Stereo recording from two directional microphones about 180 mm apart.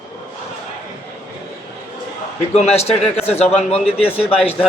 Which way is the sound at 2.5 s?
35° left (ahead or behind).